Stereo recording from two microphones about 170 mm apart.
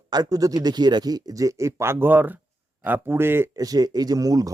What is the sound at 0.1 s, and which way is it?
A man's voice, 20° right (ahead or behind).